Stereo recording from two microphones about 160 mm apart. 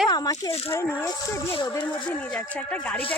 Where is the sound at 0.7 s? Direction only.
15° left (ahead or behind).